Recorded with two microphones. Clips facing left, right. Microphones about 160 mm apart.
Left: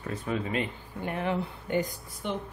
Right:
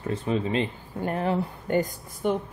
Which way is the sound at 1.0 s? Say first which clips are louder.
Right 4 dB; 40° right (ahead or behind).